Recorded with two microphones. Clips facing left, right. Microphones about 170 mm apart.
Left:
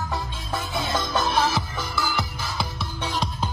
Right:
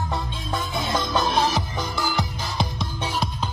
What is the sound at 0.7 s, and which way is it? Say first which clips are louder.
Music: right 1 dB; 20° right (ahead or behind).